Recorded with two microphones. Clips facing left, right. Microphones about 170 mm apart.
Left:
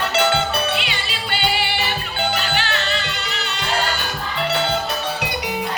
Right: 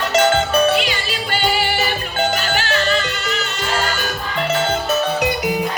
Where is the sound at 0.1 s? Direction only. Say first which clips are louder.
Right 6 dB; 45° right (ahead or behind).